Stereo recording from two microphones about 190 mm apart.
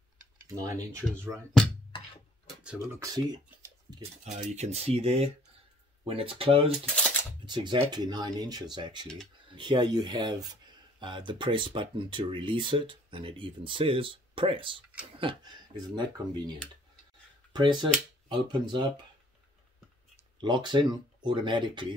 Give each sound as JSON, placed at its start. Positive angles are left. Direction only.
{"t": 0.5, "sound": "speech", "side_deg": -20}
{"t": 1.5, "sound": "speech", "side_deg": 0}
{"t": 1.9, "sound": "music", "side_deg": 25}
{"t": 2.6, "sound": "speech", "side_deg": -5}
{"t": 3.4, "sound": "a sound", "side_deg": -15}
{"t": 4.2, "sound": "speech", "side_deg": -35}
{"t": 17.5, "sound": "finger snapping", "side_deg": -25}
{"t": 18.3, "sound": "speech", "side_deg": -25}
{"t": 20.3, "sound": "speech", "side_deg": -25}